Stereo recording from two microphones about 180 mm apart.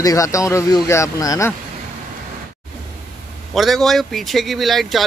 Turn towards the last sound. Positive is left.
turn(degrees=0)  # may be behind; listen again after turning